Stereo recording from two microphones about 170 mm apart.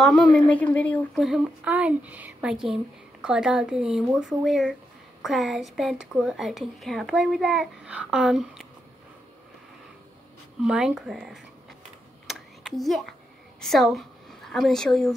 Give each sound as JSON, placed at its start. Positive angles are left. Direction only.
{"t": 0.0, "sound": "a woman's voice", "side_deg": 0}
{"t": 10.6, "sound": "a woman's voice", "side_deg": -5}
{"t": 12.3, "sound": "a sound", "side_deg": 0}
{"t": 13.6, "sound": "a woman's voice", "side_deg": 0}